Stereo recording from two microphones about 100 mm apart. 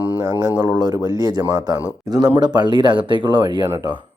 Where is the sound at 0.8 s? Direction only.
50° right (ahead or behind).